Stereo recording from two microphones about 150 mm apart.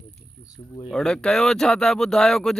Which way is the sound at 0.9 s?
5° left (ahead or behind).